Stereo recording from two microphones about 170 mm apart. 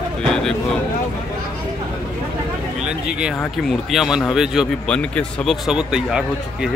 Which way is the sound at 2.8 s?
5° right (ahead or behind).